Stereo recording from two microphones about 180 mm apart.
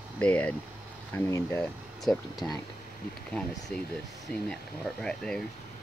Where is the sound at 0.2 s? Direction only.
5° left (ahead or behind).